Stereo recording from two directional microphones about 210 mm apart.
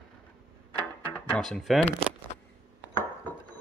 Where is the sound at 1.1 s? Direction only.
5° left (ahead or behind).